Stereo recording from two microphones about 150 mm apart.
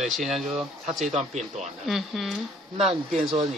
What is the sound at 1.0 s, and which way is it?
Speech, 50° right (ahead or behind).